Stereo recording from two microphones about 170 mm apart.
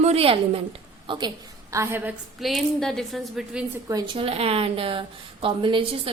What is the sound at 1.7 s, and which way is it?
A woman's voice, 15° right (ahead or behind).